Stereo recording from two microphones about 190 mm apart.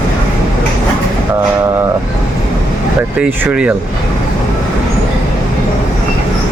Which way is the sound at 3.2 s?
10° right (ahead or behind).